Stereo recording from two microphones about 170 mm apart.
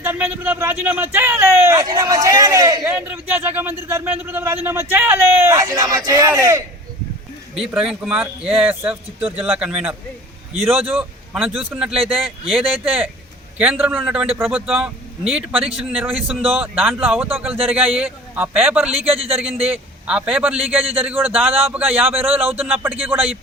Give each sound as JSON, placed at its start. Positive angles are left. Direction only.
{"t": 0.0, "sound": "speech", "side_deg": -10}
{"t": 7.6, "sound": "a man's voice", "side_deg": -5}
{"t": 10.5, "sound": "a man's voice", "side_deg": -35}
{"t": 10.9, "sound": "a man's voice", "side_deg": -10}
{"t": 18.9, "sound": "a man's voice", "side_deg": -35}
{"t": 19.6, "sound": "a man's voice", "side_deg": -10}
{"t": 20.7, "sound": "a man's voice", "side_deg": -35}
{"t": 21.0, "sound": "speech", "side_deg": -10}